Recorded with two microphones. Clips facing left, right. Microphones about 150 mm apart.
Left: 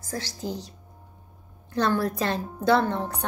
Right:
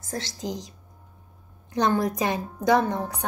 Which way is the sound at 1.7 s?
15° right (ahead or behind).